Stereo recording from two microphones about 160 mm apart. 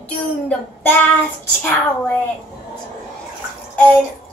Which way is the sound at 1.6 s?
10° left (ahead or behind).